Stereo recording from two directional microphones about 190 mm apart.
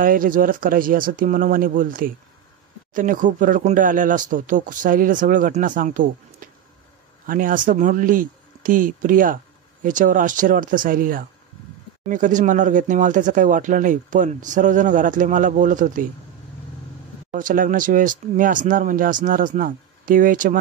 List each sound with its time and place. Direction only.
0.0 s speech: 45° right (ahead or behind)
17.3 s speech: 45° right (ahead or behind)